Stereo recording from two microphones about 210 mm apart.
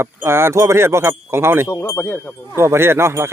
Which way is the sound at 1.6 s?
15° left (ahead or behind).